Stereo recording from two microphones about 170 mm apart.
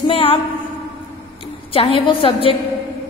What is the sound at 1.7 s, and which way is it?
Speech, 35° left (ahead or behind).